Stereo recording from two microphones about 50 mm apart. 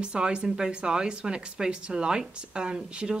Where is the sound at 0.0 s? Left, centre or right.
Centre.